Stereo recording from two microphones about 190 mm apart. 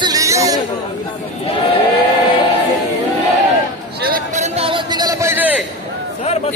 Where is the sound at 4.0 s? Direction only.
45° right (ahead or behind); by 5.5 s 15° right (ahead or behind).